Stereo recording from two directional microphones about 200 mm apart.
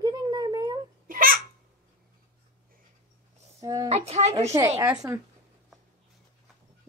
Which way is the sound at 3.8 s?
35° right (ahead or behind).